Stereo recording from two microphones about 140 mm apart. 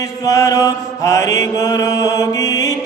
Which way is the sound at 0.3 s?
25° left (ahead or behind).